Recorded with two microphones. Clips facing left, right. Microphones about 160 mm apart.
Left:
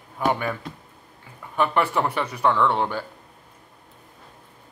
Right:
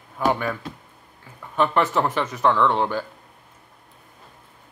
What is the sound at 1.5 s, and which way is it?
Speech, 10° left (ahead or behind).